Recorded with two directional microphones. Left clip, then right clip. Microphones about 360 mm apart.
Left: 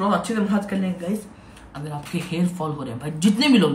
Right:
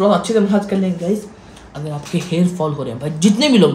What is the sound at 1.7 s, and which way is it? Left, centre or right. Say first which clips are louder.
Speech: right 6 dB; centre.